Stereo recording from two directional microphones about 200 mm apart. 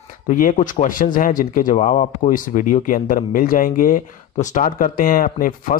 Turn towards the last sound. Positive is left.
turn(degrees=45)  # may be behind; listen again after turning